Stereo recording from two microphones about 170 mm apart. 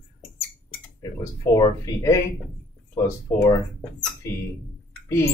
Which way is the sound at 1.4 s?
20° left (ahead or behind).